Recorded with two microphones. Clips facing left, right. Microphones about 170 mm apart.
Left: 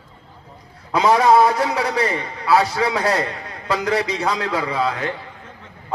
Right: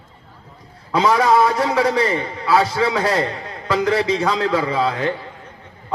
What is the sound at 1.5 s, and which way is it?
A man's voice, 30° right (ahead or behind).